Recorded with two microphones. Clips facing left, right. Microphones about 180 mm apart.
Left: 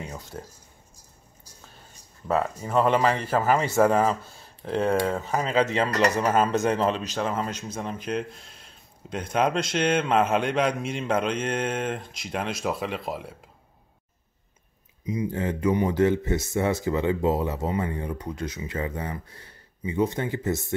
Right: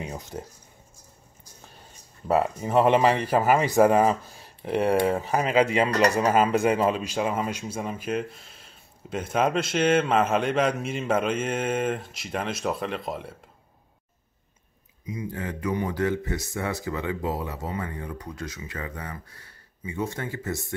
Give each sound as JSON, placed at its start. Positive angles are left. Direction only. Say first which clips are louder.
{"t": 0.0, "sound": "speech", "louder": "right 2 dB", "side_deg": -15}
{"t": 2.2, "sound": "speech", "louder": "right 2 dB", "side_deg": -15}
{"t": 15.0, "sound": "speech", "louder": "left 5 dB", "side_deg": 25}